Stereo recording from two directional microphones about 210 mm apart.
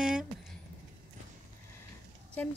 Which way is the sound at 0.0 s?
Centre (ahead or behind).